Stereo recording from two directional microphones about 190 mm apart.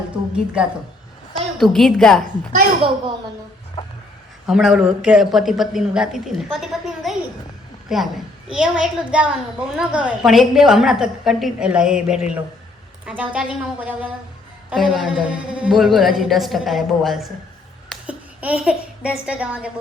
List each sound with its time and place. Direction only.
0.3 s a woman's voice: 5° right (ahead or behind)
2.2 s a woman's voice: 40° right (ahead or behind)
4.4 s a woman's voice: centre (ahead or behind)